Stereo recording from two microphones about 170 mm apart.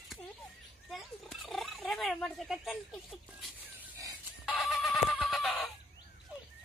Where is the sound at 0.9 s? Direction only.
Centre (ahead or behind).